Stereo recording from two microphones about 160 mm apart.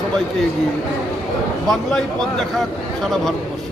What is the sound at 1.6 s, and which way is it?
Speech, centre (ahead or behind).